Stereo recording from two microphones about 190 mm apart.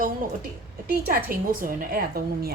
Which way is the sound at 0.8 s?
50° right (ahead or behind).